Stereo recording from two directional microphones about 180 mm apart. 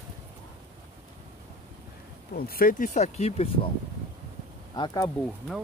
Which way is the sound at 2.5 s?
50° left (ahead or behind).